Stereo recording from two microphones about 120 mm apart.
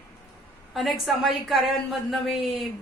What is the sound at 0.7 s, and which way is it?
A woman's voice, centre (ahead or behind).